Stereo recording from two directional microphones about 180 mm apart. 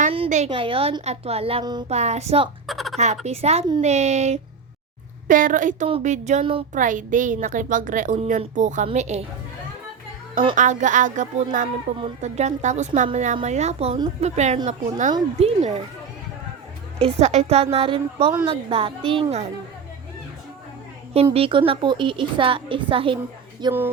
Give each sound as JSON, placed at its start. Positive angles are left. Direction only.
{"t": 0.1, "sound": "a sound", "side_deg": -35}
{"t": 0.5, "sound": "a woman's voice", "side_deg": -30}
{"t": 1.9, "sound": "a woman's voice", "side_deg": -40}
{"t": 2.6, "sound": "speech", "side_deg": 0}
{"t": 3.2, "sound": "a woman's voice", "side_deg": -35}
{"t": 6.7, "sound": "a woman's voice", "side_deg": -45}
{"t": 10.5, "sound": "a woman's voice", "side_deg": -45}
{"t": 11.9, "sound": "a woman's voice", "side_deg": -35}
{"t": 17.0, "sound": "a woman's voice", "side_deg": -35}
{"t": 21.3, "sound": "a woman's voice", "side_deg": -30}